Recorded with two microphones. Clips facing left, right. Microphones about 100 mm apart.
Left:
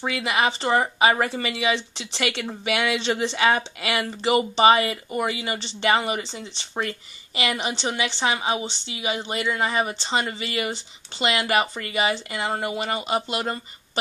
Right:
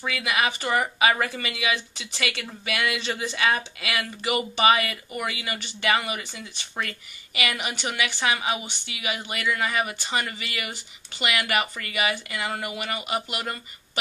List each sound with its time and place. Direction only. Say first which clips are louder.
0.0 s speech: left 3 dB; 30° left (ahead or behind)